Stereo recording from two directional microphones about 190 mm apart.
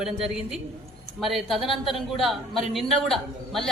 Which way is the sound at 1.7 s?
25° left (ahead or behind).